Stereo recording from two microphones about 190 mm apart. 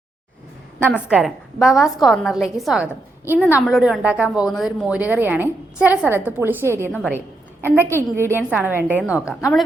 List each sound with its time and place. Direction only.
0.9 s a woman's voice: 5° right (ahead or behind)
9.0 s a woman's voice: 15° left (ahead or behind)